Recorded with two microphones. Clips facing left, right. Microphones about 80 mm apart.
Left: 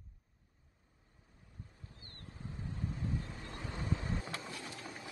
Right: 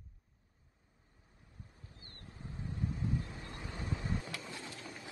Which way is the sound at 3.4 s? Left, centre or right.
Left.